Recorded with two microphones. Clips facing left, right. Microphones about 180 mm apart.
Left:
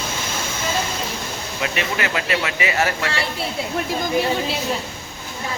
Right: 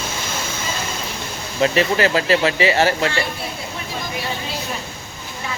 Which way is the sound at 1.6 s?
35° right (ahead or behind).